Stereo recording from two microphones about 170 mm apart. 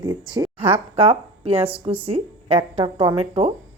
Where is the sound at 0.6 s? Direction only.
35° right (ahead or behind).